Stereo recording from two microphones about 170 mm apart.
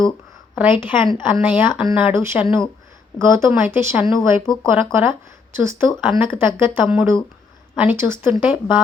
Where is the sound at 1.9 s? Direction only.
15° right (ahead or behind).